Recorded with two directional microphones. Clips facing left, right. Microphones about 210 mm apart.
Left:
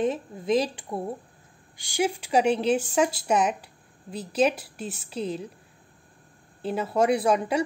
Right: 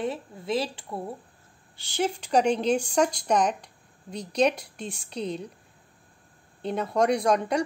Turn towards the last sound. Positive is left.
turn(degrees=5)  # may be behind; listen again after turning